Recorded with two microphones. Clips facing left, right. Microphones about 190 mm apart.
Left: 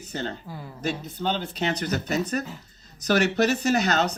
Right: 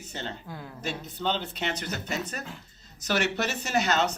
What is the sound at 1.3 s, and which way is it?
Speech, 45° left (ahead or behind).